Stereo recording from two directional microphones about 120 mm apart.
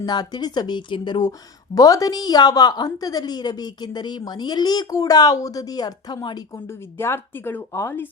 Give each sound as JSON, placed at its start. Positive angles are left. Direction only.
{"t": 0.0, "sound": "a woman's voice", "side_deg": 35}
{"t": 6.7, "sound": "speech", "side_deg": 20}